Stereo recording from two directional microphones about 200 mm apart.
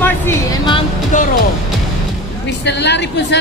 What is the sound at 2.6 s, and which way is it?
Speech, 60° left (ahead or behind).